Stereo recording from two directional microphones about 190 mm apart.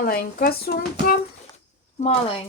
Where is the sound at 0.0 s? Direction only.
50° left (ahead or behind).